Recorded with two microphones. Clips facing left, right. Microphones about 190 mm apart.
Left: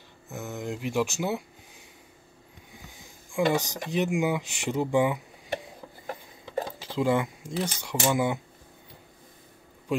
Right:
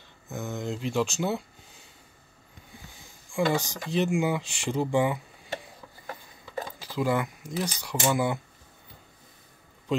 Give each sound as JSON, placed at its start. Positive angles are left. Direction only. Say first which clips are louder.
{"t": 0.3, "sound": "speech", "louder": "right 1 dB", "side_deg": 5}
{"t": 3.3, "sound": "speech", "louder": "left 1 dB", "side_deg": 20}